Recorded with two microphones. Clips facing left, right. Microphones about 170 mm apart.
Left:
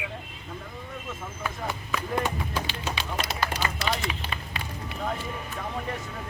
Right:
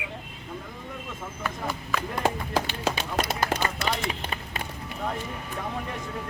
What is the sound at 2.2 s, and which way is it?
Speech, 90° right.